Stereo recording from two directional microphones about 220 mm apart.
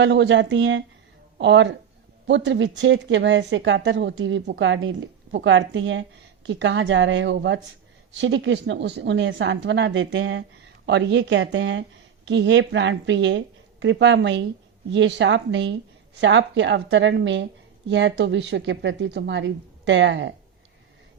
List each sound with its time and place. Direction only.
0.0 s speech: 55° right (ahead or behind)